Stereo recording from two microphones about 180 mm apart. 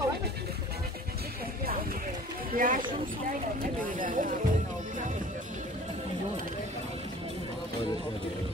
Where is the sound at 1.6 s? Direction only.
55° right (ahead or behind).